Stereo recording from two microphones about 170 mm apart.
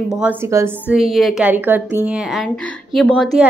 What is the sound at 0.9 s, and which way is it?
A woman's voice, centre (ahead or behind).